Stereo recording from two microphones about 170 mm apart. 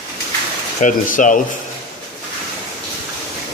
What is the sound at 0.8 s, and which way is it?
Speech, 50° left (ahead or behind).